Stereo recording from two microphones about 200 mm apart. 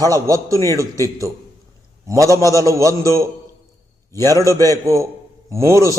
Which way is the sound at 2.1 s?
15° right (ahead or behind).